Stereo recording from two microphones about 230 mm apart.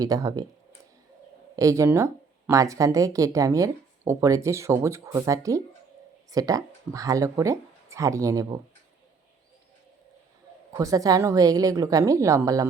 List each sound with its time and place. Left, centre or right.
0.0 s speech: centre
1.5 s speech: centre
10.7 s speech: centre